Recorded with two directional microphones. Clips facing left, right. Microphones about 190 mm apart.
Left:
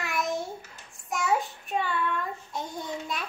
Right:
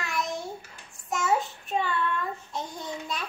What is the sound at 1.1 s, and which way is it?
Child singing, centre (ahead or behind).